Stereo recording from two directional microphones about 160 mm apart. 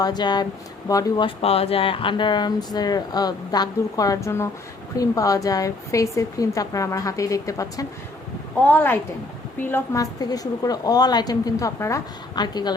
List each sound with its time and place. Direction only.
0.0 s a woman's voice: 25° left (ahead or behind)